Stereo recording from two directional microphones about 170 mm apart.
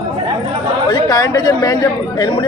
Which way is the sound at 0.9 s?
25° left (ahead or behind).